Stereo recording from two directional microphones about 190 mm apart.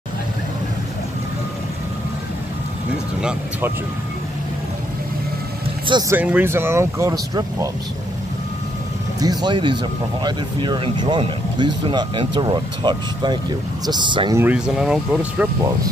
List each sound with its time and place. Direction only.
3.2 s speech: 5° right (ahead or behind)
5.9 s speech: 20° right (ahead or behind)
6.1 s speech: 10° right (ahead or behind)
9.2 s speech: 20° right (ahead or behind)
14.4 s speech: 5° right (ahead or behind)